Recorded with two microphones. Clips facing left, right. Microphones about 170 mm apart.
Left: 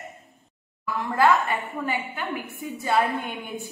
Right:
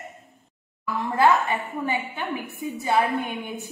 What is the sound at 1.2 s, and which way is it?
A woman's voice, 20° right (ahead or behind).